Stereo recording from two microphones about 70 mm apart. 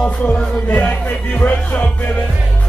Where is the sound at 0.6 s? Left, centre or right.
Left.